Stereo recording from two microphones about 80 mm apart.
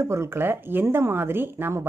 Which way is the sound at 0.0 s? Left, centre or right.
Right.